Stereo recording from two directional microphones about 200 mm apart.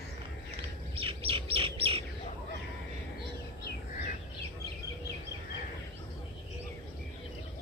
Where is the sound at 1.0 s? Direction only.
25° right (ahead or behind).